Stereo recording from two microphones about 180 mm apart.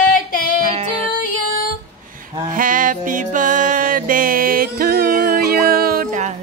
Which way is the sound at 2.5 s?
50° right (ahead or behind).